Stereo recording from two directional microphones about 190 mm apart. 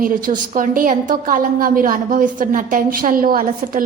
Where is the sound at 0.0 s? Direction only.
45° right (ahead or behind).